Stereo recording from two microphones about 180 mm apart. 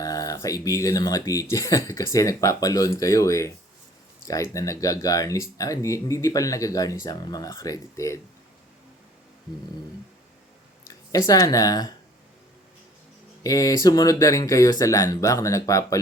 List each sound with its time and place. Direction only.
0.0 s speech: 20° left (ahead or behind)
4.5 s speech: 15° left (ahead or behind)
10.8 s speech: 20° left (ahead or behind)
13.4 s speech: 20° left (ahead or behind)